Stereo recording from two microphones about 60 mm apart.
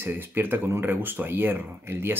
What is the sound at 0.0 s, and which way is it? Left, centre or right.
Speech, right.